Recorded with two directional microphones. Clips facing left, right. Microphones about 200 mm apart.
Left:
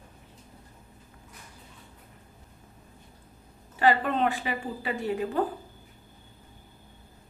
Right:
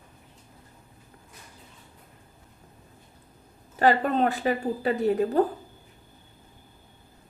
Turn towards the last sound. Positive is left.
turn(degrees=-40)  # may be behind; listen again after turning